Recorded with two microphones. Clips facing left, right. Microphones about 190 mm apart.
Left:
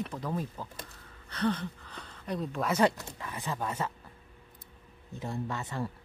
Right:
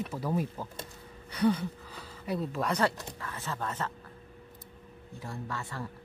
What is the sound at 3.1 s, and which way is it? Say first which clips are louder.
Speech: left 2 dB; 15° left (ahead or behind).